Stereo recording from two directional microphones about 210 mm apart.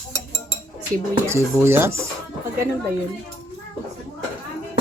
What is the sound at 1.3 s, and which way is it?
Speech, 10° right (ahead or behind).